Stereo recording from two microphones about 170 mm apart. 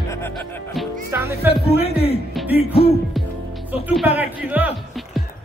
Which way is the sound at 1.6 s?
35° left (ahead or behind).